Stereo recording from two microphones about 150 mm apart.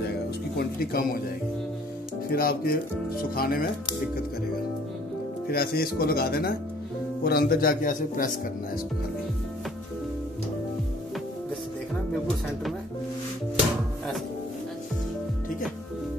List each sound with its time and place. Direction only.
0.7 s speech: 80° left
2.3 s speech: 80° left
5.5 s speech: 90° left; by 8.3 s 65° left (ahead or behind)
13.6 s music: centre (ahead or behind)